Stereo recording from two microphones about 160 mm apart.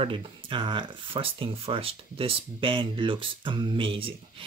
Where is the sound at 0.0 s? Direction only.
30° right (ahead or behind).